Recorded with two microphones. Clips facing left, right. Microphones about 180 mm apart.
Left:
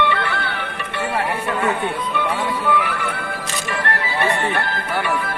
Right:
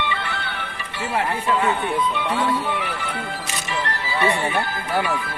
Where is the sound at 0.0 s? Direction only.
60° left (ahead or behind).